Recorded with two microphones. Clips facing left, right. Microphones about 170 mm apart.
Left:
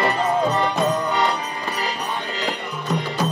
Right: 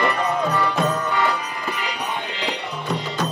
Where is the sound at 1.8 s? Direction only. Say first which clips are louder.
Left 1 dB; 40° left (ahead or behind).